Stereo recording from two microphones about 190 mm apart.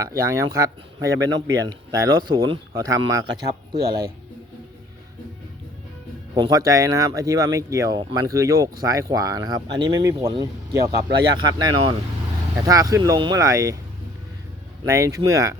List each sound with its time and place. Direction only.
0.0 s speech: 15° right (ahead or behind)
3.4 s speech: 55° right (ahead or behind)
6.3 s speech: 20° right (ahead or behind)
14.8 s speech: 15° right (ahead or behind)